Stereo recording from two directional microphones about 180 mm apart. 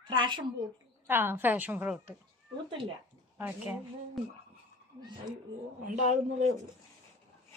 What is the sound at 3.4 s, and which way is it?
Speech, 10° right (ahead or behind).